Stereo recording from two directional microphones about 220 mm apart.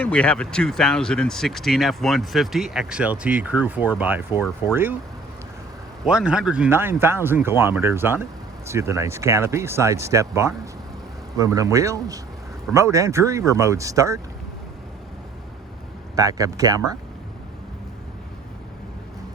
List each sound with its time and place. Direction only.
0.0 s speech: 5° left (ahead or behind)
6.1 s speech: 5° right (ahead or behind)
16.1 s speech: 15° right (ahead or behind)